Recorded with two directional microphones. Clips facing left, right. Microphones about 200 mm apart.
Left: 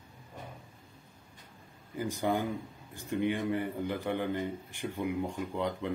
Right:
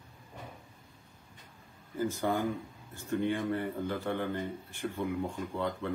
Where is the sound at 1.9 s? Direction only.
15° left (ahead or behind).